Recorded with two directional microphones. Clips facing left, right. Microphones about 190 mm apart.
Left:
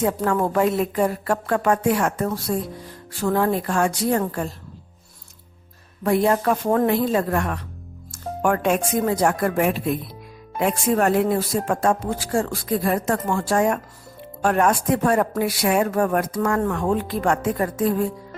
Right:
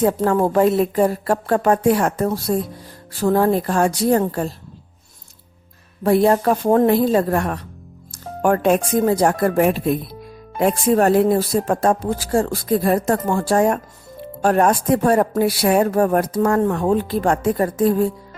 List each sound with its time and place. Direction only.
0.0 s speech: 30° right (ahead or behind)
6.0 s speech: 35° right (ahead or behind)
16.6 s speech: 25° right (ahead or behind)